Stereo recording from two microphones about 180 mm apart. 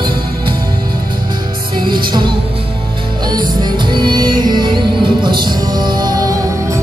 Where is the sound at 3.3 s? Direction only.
25° right (ahead or behind).